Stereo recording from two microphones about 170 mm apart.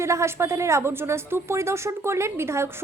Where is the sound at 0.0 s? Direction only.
15° right (ahead or behind).